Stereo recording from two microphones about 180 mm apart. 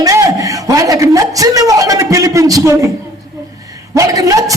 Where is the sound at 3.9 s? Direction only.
20° right (ahead or behind).